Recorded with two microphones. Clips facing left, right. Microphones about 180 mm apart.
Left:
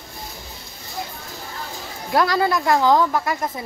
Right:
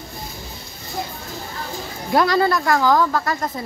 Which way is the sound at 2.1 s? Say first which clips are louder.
Right 2 dB; 5° left (ahead or behind).